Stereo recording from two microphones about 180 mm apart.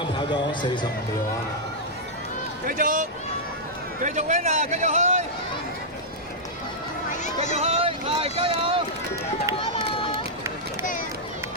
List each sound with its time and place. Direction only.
0.2 s speech: 25° left (ahead or behind)
2.6 s a man's voice: 50° right (ahead or behind)
7.1 s a sound: 40° left (ahead or behind)
7.5 s speech: 35° right (ahead or behind)